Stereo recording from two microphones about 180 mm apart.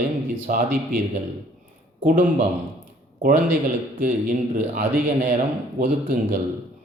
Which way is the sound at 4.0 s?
50° right (ahead or behind).